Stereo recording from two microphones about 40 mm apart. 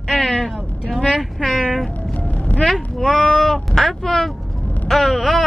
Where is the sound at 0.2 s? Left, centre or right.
Left.